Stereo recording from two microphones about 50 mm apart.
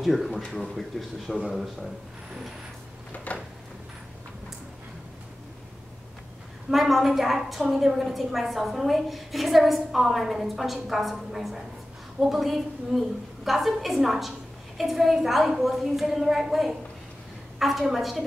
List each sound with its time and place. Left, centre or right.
0.0 s a woman's voice: centre
3.3 s a sound: left
6.7 s a woman's voice: centre